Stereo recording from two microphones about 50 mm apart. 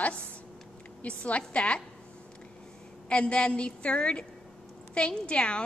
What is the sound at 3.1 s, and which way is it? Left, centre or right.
A woman's voice, left.